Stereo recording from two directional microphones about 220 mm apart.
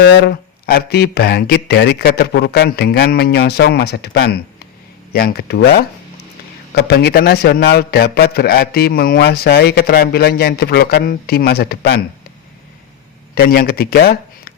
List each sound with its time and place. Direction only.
0.0 s a man's voice: 45° left (ahead or behind)
13.3 s speech: 45° left (ahead or behind)